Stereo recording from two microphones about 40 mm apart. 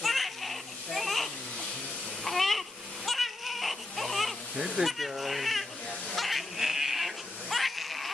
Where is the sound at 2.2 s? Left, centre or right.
Centre.